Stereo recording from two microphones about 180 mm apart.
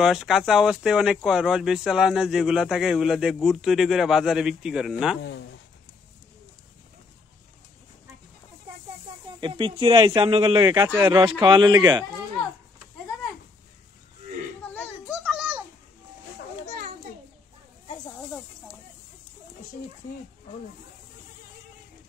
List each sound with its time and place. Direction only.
0.0 s speech: 5° right (ahead or behind)
5.2 s speech: 80° left
9.4 s speech: 30° right (ahead or behind)
14.6 s children playing: 10° left (ahead or behind)
15.2 s a sound: 5° right (ahead or behind)